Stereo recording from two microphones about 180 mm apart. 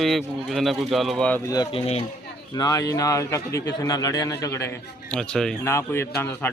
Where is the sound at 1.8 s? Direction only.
35° left (ahead or behind).